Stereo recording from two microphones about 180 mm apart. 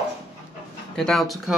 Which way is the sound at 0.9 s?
Centre (ahead or behind).